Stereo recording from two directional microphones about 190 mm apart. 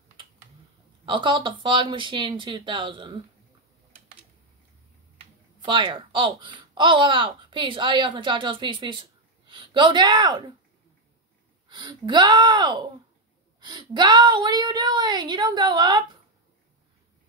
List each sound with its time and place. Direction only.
1.0 s speech: 25° right (ahead or behind)
5.7 s speech: 25° right (ahead or behind)
11.7 s speech: 20° right (ahead or behind)